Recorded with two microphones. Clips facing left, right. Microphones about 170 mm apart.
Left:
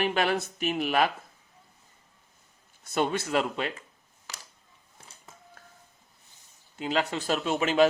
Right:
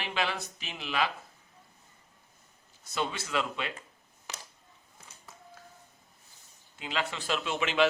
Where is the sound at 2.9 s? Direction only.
50° left (ahead or behind).